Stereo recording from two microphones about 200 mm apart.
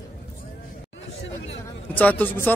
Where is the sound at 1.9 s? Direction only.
10° left (ahead or behind).